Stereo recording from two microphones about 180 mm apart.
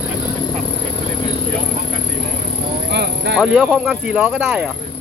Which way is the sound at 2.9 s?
70° right (ahead or behind).